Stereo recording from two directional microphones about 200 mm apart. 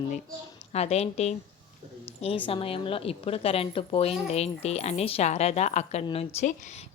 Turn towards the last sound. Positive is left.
turn(degrees=35)  # may be behind; listen again after turning